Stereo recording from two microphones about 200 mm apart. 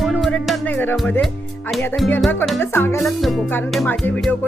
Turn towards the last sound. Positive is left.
turn(degrees=10)  # may be behind; listen again after turning